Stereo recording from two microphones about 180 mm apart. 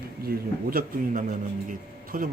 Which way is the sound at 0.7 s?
55° right (ahead or behind).